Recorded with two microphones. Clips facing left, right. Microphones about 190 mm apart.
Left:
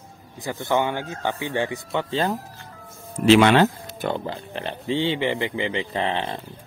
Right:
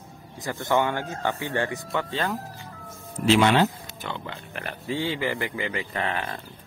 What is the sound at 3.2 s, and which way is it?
Speech, 70° left (ahead or behind).